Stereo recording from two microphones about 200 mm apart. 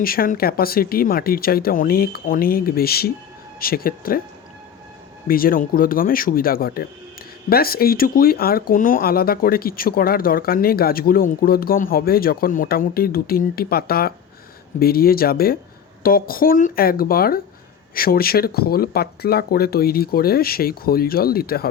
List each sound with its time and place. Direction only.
0.0 s speech: 45° left (ahead or behind)
5.3 s speech: 45° left (ahead or behind)